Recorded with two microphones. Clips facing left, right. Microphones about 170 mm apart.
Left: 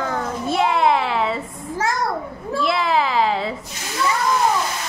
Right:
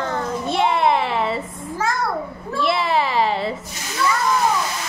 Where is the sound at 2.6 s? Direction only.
Centre (ahead or behind).